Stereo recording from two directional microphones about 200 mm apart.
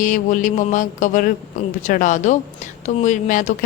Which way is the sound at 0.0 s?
40° left (ahead or behind).